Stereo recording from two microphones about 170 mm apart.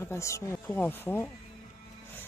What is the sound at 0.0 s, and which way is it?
Speech, 15° left (ahead or behind).